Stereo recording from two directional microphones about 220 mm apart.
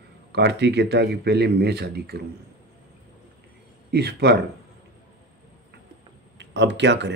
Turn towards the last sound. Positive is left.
turn(degrees=-50)  # may be behind; listen again after turning